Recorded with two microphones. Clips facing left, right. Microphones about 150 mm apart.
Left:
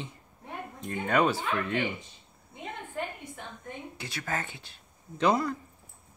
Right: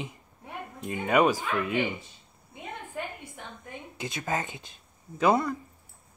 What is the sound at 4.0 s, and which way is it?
Speech, 20° right (ahead or behind).